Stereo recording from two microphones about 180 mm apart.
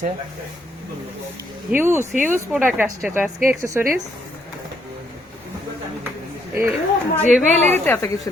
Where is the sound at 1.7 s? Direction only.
15° right (ahead or behind).